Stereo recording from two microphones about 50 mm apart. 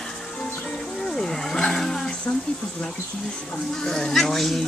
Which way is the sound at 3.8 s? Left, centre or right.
Centre.